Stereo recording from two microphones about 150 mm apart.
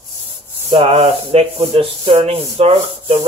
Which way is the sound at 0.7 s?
40° right (ahead or behind).